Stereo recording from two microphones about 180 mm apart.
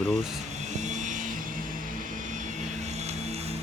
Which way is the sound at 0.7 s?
40° right (ahead or behind).